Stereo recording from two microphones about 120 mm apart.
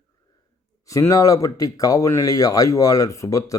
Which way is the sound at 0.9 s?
25° left (ahead or behind).